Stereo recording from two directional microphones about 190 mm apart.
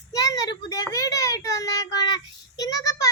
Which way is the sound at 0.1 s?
20° left (ahead or behind).